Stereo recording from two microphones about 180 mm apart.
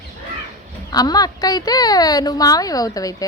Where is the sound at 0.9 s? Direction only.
20° left (ahead or behind).